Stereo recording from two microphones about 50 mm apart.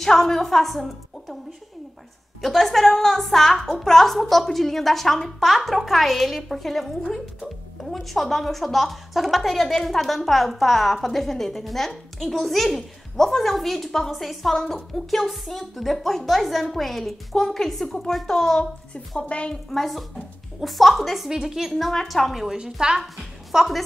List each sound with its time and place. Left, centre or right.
0.0 s a woman's voice: centre
2.4 s a woman's voice: centre
18.9 s a woman's voice: left
19.7 s a woman's voice: centre